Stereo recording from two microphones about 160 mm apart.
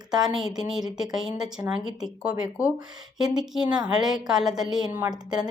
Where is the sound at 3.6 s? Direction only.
25° right (ahead or behind).